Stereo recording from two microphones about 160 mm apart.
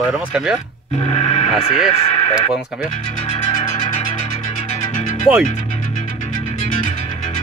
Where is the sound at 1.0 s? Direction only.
35° left (ahead or behind).